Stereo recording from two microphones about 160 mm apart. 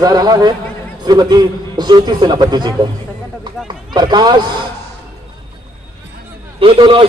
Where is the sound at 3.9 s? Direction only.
25° right (ahead or behind).